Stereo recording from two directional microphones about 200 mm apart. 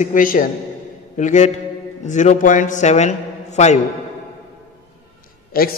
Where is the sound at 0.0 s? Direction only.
40° left (ahead or behind).